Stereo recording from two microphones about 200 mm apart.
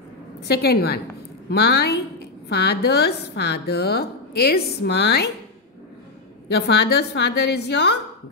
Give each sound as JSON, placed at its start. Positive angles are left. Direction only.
{"t": 0.5, "sound": "a woman's voice", "side_deg": 55}
{"t": 6.5, "sound": "a woman's voice", "side_deg": 55}